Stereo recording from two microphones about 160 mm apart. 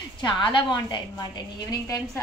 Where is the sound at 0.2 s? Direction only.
30° left (ahead or behind).